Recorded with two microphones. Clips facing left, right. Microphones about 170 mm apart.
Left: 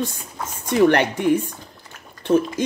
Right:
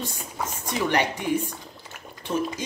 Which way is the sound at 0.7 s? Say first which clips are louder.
Left 9 dB; 60° left (ahead or behind).